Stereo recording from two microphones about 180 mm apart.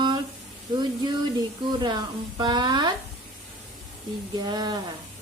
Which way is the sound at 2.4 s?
25° right (ahead or behind).